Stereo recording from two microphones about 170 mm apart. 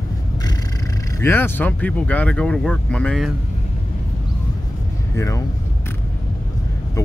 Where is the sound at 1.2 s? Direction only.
15° left (ahead or behind).